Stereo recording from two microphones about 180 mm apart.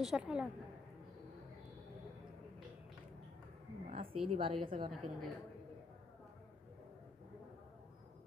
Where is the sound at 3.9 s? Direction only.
30° right (ahead or behind).